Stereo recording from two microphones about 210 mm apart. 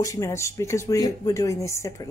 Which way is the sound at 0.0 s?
15° left (ahead or behind).